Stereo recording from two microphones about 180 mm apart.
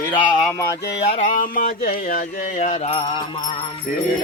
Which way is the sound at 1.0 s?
35° left (ahead or behind).